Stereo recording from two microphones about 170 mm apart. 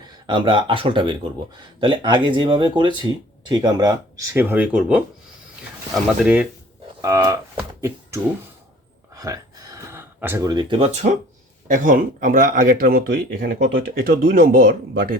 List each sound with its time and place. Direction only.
0.3 s speech: 30° right (ahead or behind); by 6.5 s 5° right (ahead or behind)
7.0 s speech: 20° right (ahead or behind)
9.1 s a sound: 20° right (ahead or behind)
11.7 s speech: 50° right (ahead or behind)